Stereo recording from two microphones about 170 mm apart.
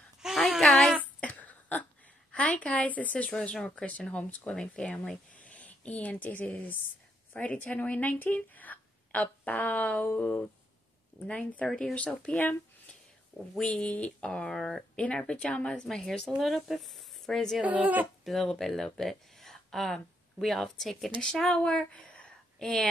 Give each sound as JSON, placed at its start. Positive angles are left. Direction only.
{"t": 0.2, "sound": "a sound", "side_deg": 0}
{"t": 2.3, "sound": "speech", "side_deg": 5}
{"t": 13.6, "sound": "speech", "side_deg": 5}
{"t": 17.6, "sound": "speech", "side_deg": -10}
{"t": 18.3, "sound": "speech", "side_deg": 5}